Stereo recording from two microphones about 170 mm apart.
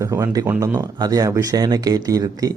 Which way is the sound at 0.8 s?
20° right (ahead or behind).